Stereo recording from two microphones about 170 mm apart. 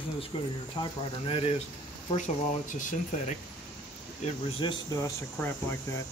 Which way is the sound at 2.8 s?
50° left (ahead or behind).